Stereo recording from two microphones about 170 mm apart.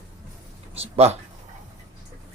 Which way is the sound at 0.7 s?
35° right (ahead or behind).